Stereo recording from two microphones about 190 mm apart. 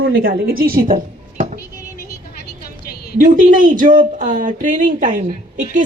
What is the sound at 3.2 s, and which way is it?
A woman's voice, 45° right (ahead or behind).